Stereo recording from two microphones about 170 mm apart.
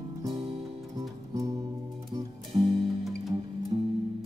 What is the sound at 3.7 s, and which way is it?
Music, 35° right (ahead or behind).